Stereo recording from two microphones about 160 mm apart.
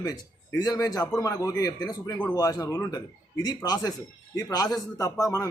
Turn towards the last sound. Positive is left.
turn(degrees=20)  # may be behind; listen again after turning